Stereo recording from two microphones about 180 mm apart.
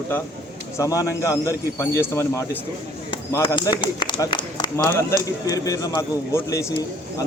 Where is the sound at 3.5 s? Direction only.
25° left (ahead or behind).